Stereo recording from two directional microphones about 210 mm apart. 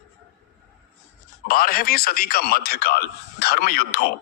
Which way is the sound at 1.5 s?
45° left (ahead or behind).